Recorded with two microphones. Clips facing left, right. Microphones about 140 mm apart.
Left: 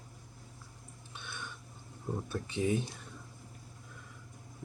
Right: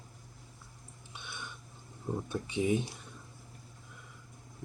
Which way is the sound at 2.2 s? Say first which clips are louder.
Right 2 dB; 15° right (ahead or behind).